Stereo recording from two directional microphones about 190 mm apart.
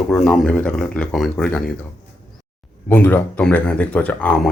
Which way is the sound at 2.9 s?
10° left (ahead or behind).